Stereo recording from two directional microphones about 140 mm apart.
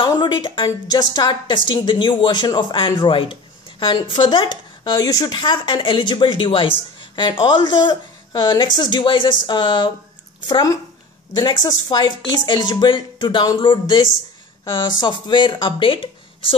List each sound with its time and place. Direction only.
0.0 s a woman's voice: 35° left (ahead or behind)